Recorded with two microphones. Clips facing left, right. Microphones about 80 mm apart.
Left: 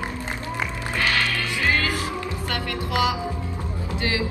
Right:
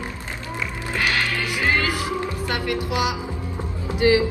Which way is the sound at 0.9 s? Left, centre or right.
Right.